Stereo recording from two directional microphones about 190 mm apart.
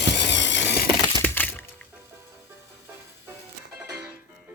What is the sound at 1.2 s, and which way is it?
Crack, 10° left (ahead or behind).